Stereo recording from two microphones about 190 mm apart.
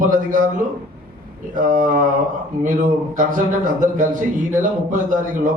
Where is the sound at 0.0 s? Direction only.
45° right (ahead or behind).